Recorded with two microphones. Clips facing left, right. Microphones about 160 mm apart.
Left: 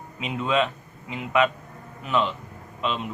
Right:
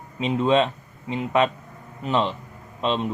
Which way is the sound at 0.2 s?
30° right (ahead or behind).